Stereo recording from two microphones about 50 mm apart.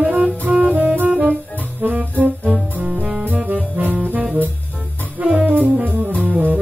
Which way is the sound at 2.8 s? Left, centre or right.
Centre.